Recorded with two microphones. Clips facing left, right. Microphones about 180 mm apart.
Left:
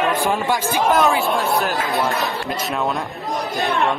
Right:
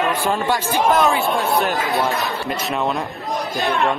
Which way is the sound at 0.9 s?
Centre (ahead or behind).